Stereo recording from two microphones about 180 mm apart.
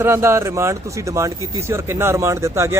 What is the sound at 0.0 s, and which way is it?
Speech, 15° right (ahead or behind).